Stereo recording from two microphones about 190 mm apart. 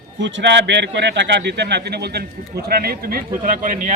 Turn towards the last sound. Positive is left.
turn(degrees=-45)  # may be behind; listen again after turning